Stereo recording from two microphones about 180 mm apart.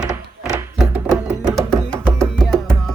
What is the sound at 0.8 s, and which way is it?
Music, 10° right (ahead or behind).